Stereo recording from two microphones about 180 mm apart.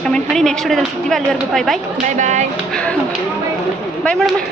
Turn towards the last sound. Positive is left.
turn(degrees=5)  # may be behind; listen again after turning